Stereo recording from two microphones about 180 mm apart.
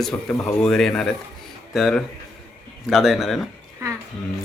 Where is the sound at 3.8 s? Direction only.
15° right (ahead or behind).